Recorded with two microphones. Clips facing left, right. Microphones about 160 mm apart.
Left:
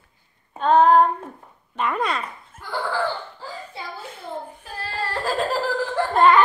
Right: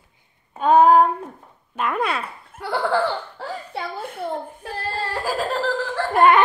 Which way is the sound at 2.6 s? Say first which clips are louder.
Right 4 dB; 75° right (ahead or behind).